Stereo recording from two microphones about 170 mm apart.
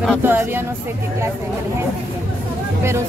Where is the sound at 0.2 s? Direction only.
15° right (ahead or behind).